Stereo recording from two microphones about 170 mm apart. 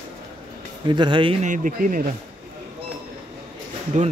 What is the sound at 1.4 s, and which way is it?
Speech, 50° right (ahead or behind).